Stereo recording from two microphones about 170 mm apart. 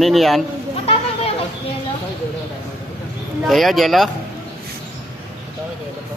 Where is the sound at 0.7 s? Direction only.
35° left (ahead or behind).